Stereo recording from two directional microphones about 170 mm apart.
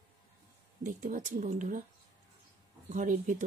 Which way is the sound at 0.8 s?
50° right (ahead or behind).